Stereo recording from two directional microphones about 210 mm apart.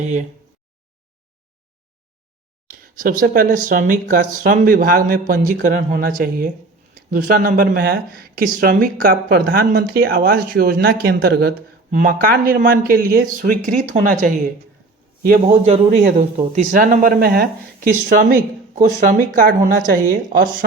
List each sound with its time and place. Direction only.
2.6 s speech: 40° right (ahead or behind)
15.6 s speech: 30° right (ahead or behind)